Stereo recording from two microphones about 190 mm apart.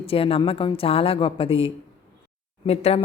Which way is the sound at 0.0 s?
30° left (ahead or behind).